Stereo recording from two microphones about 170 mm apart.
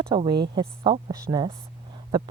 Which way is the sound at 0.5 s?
30° right (ahead or behind).